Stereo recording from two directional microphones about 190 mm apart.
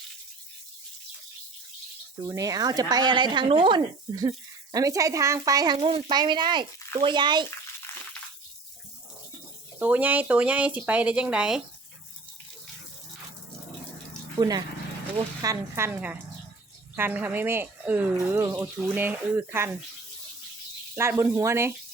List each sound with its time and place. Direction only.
2.2 s speech: 15° right (ahead or behind)
7.9 s a sound: 15° left (ahead or behind)
9.7 s speech: 10° right (ahead or behind)
14.3 s speech: 20° right (ahead or behind)
20.9 s speech: 10° right (ahead or behind)